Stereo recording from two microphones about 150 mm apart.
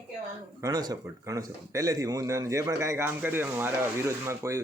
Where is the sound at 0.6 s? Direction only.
25° right (ahead or behind).